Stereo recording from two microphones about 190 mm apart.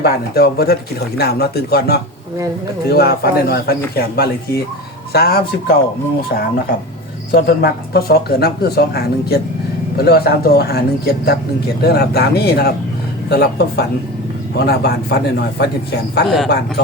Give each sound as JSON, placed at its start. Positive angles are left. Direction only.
{"t": 0.0, "sound": "speech", "side_deg": 55}